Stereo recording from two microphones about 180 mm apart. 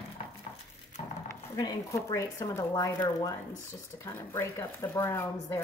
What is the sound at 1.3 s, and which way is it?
Speech, 20° left (ahead or behind).